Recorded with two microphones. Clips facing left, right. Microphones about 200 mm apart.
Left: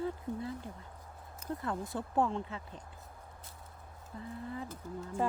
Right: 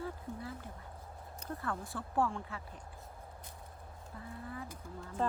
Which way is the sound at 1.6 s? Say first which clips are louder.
Left 3 dB; 20° left (ahead or behind).